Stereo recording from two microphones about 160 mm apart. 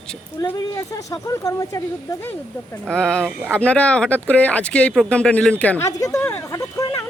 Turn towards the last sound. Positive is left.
turn(degrees=20)  # may be behind; listen again after turning